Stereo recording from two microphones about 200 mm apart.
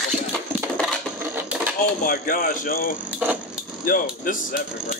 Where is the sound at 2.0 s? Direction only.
45° left (ahead or behind).